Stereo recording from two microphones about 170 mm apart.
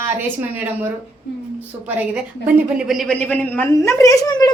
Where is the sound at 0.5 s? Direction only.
10° right (ahead or behind).